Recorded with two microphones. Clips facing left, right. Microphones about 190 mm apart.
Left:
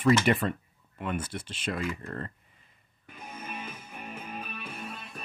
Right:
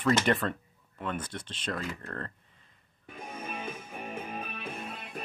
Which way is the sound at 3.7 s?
25° right (ahead or behind).